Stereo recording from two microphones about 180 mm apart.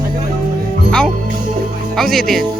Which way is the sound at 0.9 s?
5° left (ahead or behind).